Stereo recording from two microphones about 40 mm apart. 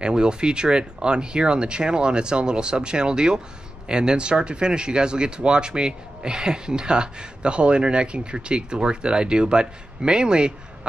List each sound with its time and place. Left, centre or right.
0.0 s speech: right